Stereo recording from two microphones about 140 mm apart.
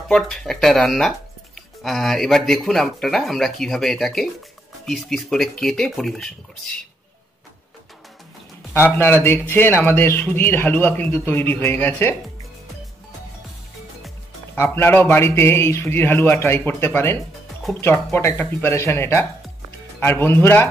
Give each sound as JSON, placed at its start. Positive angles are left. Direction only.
{"t": 0.1, "sound": "speech", "side_deg": 5}
{"t": 8.9, "sound": "speech", "side_deg": 15}
{"t": 14.6, "sound": "speech", "side_deg": 15}